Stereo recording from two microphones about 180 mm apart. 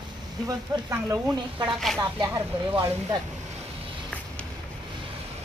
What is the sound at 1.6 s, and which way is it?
Speech, centre (ahead or behind).